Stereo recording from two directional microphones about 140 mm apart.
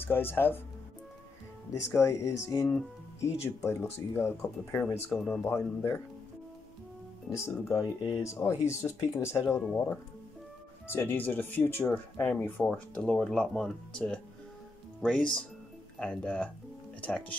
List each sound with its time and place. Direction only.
0.0 s speech: 15° left (ahead or behind)
1.7 s speech: 20° left (ahead or behind)
5.1 s speech: 5° left (ahead or behind)
5.4 s speech: 15° left (ahead or behind)
7.3 s speech: 20° left (ahead or behind)
9.6 s speech: 5° left (ahead or behind)